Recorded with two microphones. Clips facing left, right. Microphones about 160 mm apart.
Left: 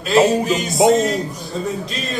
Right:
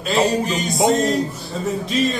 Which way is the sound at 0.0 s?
Centre (ahead or behind).